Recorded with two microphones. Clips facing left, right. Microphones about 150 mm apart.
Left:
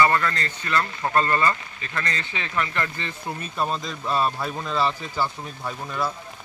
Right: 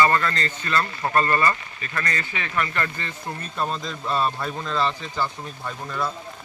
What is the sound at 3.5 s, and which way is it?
Speech, 5° left (ahead or behind).